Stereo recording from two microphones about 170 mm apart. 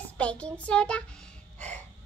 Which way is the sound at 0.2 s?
5° left (ahead or behind).